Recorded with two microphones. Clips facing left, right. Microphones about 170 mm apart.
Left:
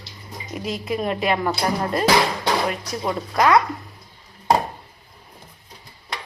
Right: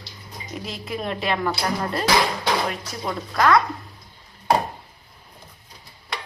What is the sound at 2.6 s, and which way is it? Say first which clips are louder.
Speech: left 3 dB; 10° left (ahead or behind).